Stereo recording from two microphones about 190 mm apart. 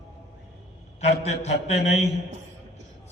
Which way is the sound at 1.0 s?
35° left (ahead or behind).